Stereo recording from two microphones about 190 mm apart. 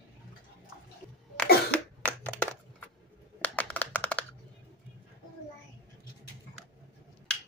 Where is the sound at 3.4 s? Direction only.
10° left (ahead or behind).